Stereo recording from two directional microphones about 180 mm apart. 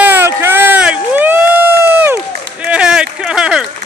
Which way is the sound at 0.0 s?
10° right (ahead or behind).